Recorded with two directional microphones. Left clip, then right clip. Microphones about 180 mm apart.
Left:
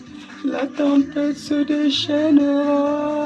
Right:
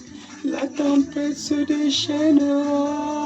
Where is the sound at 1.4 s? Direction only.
30° left (ahead or behind).